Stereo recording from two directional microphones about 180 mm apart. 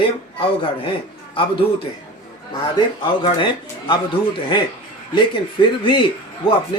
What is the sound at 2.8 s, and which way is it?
Speech, 25° left (ahead or behind).